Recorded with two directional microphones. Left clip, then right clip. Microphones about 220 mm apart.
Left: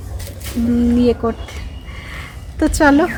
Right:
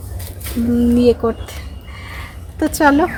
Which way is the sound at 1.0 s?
30° right (ahead or behind).